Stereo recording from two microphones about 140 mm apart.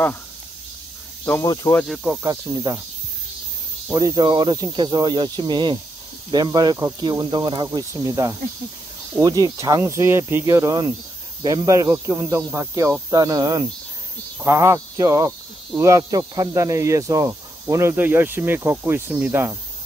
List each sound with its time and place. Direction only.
1.2 s speech: 15° left (ahead or behind)
2.2 s speech: 25° right (ahead or behind)
3.9 s speech: 30° right (ahead or behind)
7.6 s speech: 25° right (ahead or behind)